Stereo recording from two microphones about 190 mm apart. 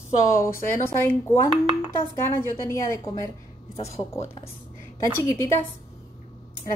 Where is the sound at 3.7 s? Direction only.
35° left (ahead or behind).